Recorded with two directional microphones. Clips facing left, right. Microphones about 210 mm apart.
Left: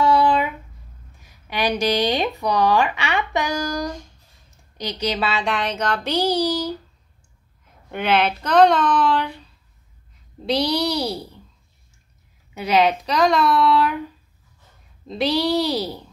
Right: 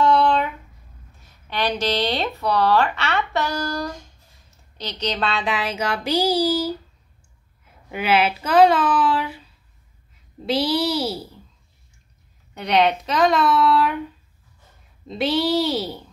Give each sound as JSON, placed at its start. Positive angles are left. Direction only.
{"t": 0.0, "sound": "a sound", "side_deg": 10}
{"t": 1.2, "sound": "speech", "side_deg": 10}
{"t": 7.9, "sound": "speech", "side_deg": -5}
{"t": 12.5, "sound": "speech", "side_deg": 0}